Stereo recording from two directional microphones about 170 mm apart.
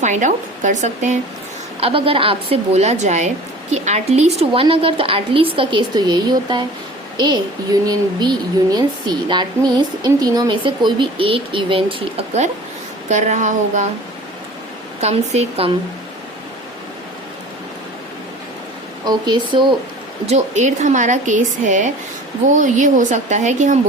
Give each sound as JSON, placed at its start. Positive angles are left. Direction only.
{"t": 0.0, "sound": "speech", "side_deg": -45}
{"t": 1.8, "sound": "a woman's voice", "side_deg": -30}
{"t": 15.0, "sound": "a woman's voice", "side_deg": -40}
{"t": 19.0, "sound": "speech", "side_deg": -25}
{"t": 20.2, "sound": "speech", "side_deg": -45}